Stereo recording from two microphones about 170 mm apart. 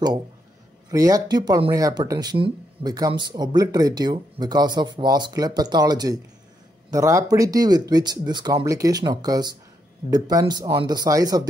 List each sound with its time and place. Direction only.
0.8 s speech: 20° right (ahead or behind)